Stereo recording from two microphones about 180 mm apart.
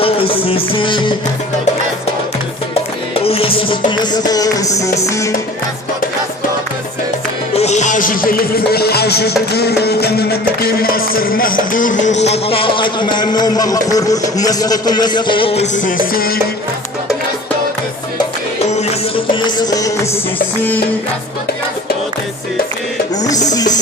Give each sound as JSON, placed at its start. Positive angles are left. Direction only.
{"t": 0.0, "sound": "music", "side_deg": 30}
{"t": 3.2, "sound": "music", "side_deg": 30}
{"t": 7.5, "sound": "music", "side_deg": 40}
{"t": 16.1, "sound": "music", "side_deg": 55}
{"t": 18.6, "sound": "music", "side_deg": 35}
{"t": 23.5, "sound": "music", "side_deg": 20}